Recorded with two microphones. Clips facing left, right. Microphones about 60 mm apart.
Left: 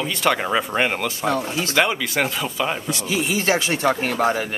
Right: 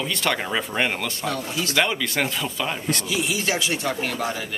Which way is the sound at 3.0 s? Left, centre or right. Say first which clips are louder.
Left 6 dB; left.